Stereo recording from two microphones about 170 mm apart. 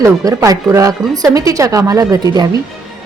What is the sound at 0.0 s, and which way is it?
A woman's voice, 20° right (ahead or behind).